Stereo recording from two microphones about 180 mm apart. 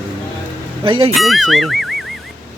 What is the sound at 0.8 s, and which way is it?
Speech, 30° right (ahead or behind).